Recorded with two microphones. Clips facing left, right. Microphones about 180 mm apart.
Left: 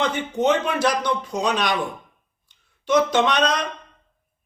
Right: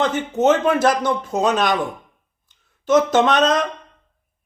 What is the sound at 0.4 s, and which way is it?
Speech, 45° right (ahead or behind).